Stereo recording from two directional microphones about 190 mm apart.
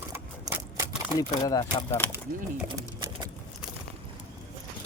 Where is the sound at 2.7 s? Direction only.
20° right (ahead or behind).